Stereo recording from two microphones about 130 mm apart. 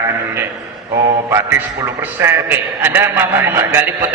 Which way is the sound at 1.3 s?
20° right (ahead or behind).